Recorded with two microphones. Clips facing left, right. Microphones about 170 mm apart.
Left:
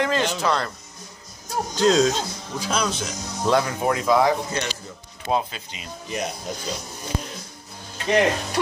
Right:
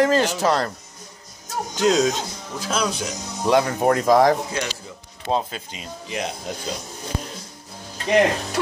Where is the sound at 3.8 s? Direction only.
40° right (ahead or behind).